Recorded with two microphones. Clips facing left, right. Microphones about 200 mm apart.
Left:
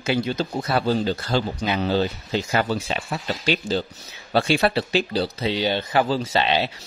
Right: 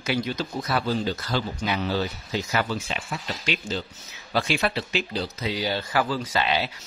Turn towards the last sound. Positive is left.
turn(degrees=25)  # may be behind; listen again after turning